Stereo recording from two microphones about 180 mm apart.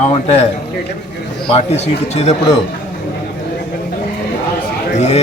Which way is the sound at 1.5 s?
35° left (ahead or behind).